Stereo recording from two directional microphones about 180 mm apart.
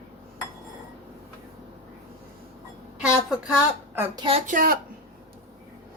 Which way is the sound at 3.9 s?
20° right (ahead or behind).